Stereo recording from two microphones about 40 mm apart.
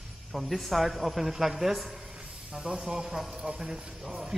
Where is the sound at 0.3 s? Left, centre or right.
Centre.